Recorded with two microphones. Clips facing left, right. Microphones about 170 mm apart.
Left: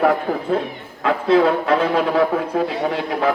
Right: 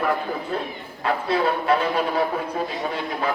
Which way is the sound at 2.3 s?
70° left (ahead or behind).